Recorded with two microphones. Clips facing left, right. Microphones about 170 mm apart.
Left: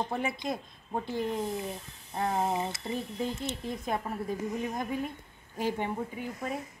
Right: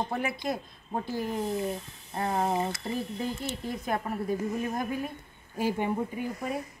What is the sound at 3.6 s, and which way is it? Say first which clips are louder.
A woman's voice: right 2 dB; centre (ahead or behind).